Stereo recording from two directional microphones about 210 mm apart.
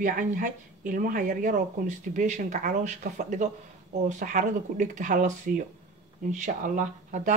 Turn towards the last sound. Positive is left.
turn(degrees=-35)  # may be behind; listen again after turning